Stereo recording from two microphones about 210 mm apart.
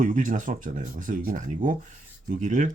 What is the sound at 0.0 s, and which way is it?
Speech, 40° right (ahead or behind).